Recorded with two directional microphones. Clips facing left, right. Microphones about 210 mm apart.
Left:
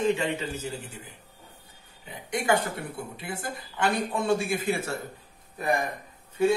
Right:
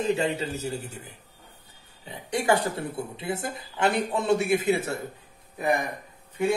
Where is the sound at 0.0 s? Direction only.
35° right (ahead or behind).